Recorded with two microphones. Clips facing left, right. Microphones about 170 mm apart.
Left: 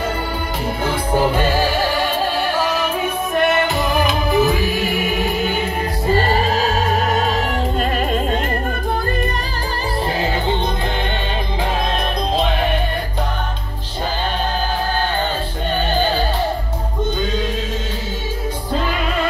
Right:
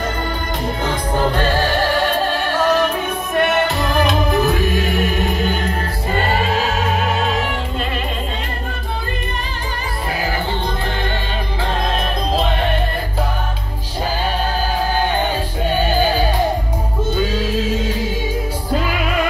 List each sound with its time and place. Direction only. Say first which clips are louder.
0.8 s music: left 2 dB; 10° left (ahead or behind)
6.1 s music: even; 35° left (ahead or behind)
15.9 s music: even; 10° right (ahead or behind)